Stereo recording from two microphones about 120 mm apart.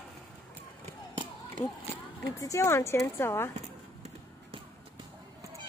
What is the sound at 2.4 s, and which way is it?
Speech, 25° left (ahead or behind).